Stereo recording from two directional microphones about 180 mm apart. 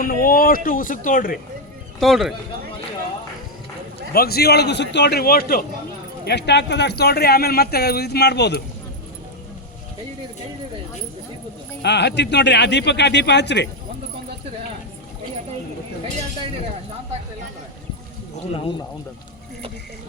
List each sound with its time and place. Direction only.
0.0 s speech: 50° left (ahead or behind)
2.0 s a man's voice: centre (ahead or behind)
4.1 s speech: 60° left (ahead or behind)
6.2 s speech: 70° left (ahead or behind)
11.8 s speech: 70° left (ahead or behind)